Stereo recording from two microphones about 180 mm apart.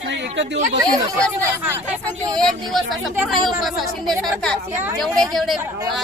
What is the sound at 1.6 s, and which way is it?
Speech, 10° right (ahead or behind).